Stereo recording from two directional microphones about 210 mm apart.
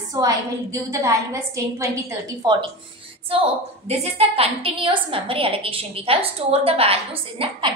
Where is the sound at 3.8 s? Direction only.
30° right (ahead or behind).